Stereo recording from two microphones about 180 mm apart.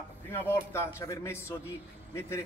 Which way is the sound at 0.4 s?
10° left (ahead or behind).